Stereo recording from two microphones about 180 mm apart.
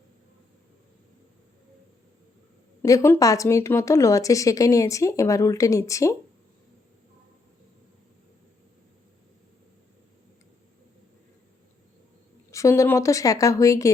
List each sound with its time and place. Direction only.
2.8 s a woman's voice: 15° left (ahead or behind)
12.5 s a woman's voice: 15° left (ahead or behind)